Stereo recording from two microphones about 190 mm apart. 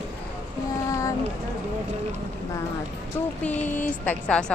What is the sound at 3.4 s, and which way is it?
Speech, 10° left (ahead or behind).